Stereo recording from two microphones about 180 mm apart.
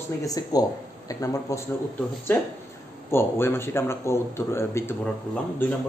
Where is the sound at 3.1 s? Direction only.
15° left (ahead or behind).